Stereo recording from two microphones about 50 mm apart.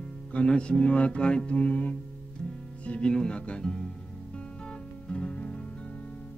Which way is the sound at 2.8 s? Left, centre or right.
Left.